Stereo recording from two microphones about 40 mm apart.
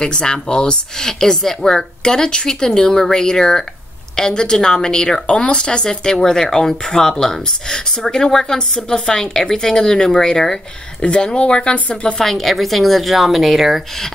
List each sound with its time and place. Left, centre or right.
0.0 s speech: left
11.1 s speech: left
12.2 s a woman's voice: centre